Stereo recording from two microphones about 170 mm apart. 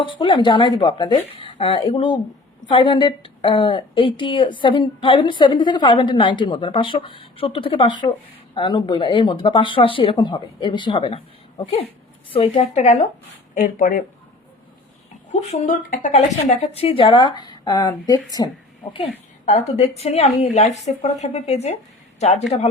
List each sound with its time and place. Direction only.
0.0 s a woman's voice: 30° left (ahead or behind)
13.5 s speech: 50° left (ahead or behind)
15.3 s a woman's voice: 40° left (ahead or behind); by 18.5 s 20° left (ahead or behind)
19.5 s a woman's voice: 35° left (ahead or behind)